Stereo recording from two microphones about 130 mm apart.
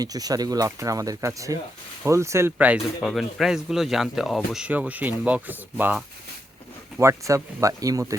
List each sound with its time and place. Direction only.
0.0 s speech: 30° right (ahead or behind)
3.0 s speech: centre (ahead or behind)
7.0 s speech: 20° right (ahead or behind)